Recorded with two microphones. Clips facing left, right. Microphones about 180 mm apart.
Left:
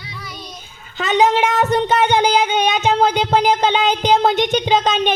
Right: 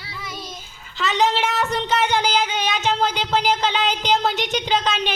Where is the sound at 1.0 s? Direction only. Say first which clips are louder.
Left 5 dB; 50° left (ahead or behind).